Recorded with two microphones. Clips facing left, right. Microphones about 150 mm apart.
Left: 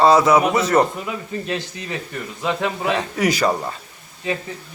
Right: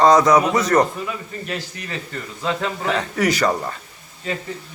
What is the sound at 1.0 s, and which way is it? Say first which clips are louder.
A man's voice: left 2 dB; 20° left (ahead or behind).